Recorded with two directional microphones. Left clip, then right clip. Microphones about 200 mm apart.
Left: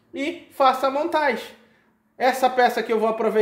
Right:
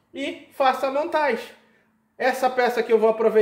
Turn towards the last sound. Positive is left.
turn(degrees=20)  # may be behind; listen again after turning